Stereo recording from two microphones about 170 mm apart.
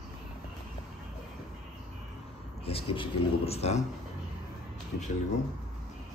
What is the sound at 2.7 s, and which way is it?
Speech, 35° left (ahead or behind).